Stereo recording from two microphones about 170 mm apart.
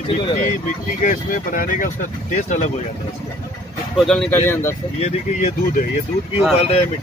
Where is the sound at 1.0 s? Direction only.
50° left (ahead or behind).